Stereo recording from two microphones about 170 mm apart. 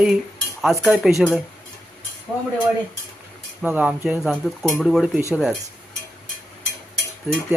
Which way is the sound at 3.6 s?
10° right (ahead or behind).